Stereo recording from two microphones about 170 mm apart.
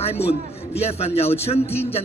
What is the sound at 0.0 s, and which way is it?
A man's voice, 35° left (ahead or behind).